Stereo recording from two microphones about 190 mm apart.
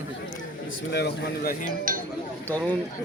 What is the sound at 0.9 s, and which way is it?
Speech, 60° left (ahead or behind).